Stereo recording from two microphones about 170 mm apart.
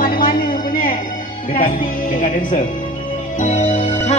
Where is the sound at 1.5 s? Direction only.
50° left (ahead or behind).